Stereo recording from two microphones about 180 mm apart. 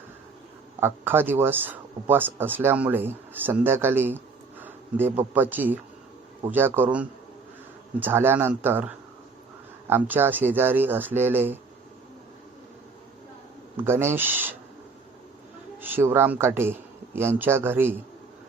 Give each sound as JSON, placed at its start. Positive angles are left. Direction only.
{"t": 0.8, "sound": "speech", "side_deg": -10}
{"t": 13.7, "sound": "speech", "side_deg": -15}
{"t": 15.8, "sound": "speech", "side_deg": -10}